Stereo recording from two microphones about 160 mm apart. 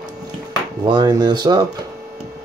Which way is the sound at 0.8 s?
25° right (ahead or behind).